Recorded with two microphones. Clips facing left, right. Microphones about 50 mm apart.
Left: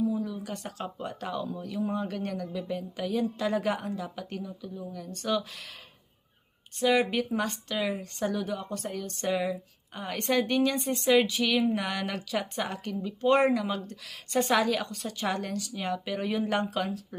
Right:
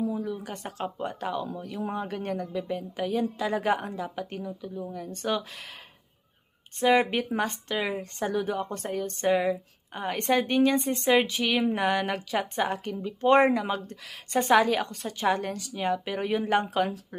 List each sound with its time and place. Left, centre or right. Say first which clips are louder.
0.1 s a woman's voice: even; right
6.7 s a woman's voice: right 2 dB; right